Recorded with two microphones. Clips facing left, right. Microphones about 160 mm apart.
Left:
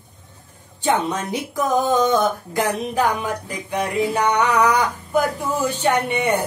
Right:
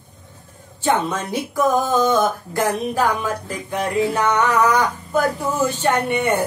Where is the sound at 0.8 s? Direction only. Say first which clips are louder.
Even; 20° left (ahead or behind).